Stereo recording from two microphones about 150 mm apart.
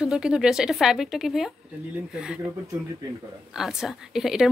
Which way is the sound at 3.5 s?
5° right (ahead or behind).